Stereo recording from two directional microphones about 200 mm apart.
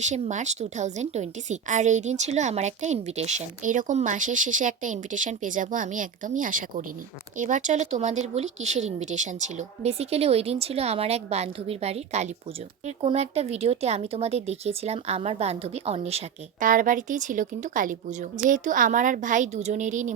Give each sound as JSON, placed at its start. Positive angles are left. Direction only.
{"t": 0.0, "sound": "speech", "side_deg": -35}